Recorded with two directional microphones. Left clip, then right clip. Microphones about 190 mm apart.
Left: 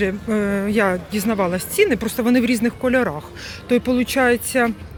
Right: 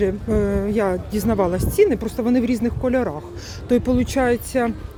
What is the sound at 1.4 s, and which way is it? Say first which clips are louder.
Speech: even; 10° right (ahead or behind).